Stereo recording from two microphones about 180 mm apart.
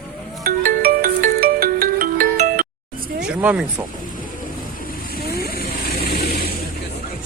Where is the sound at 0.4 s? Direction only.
55° right (ahead or behind).